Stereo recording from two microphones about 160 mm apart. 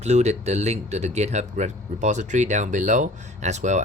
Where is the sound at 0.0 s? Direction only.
45° right (ahead or behind).